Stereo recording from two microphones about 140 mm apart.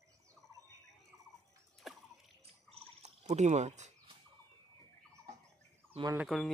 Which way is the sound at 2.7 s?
55° right (ahead or behind).